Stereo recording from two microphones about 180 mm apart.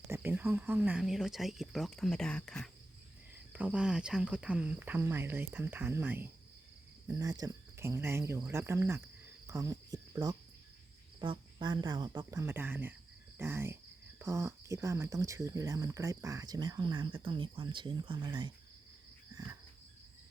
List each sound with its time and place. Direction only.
0.1 s speech: 10° right (ahead or behind)
3.5 s speech: 5° right (ahead or behind)
9.5 s cricket: 20° right (ahead or behind)
11.2 s speech: 25° right (ahead or behind)